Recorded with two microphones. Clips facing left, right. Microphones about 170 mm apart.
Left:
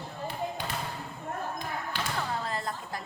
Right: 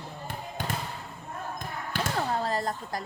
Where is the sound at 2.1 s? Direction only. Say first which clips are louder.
Right 6 dB; 40° right (ahead or behind).